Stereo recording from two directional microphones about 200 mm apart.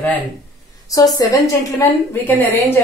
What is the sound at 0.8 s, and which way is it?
A woman's voice, 20° left (ahead or behind).